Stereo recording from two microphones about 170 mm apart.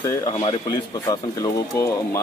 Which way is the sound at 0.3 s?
30° left (ahead or behind).